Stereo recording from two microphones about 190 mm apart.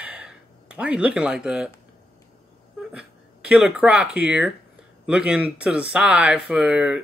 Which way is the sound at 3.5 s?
5° right (ahead or behind).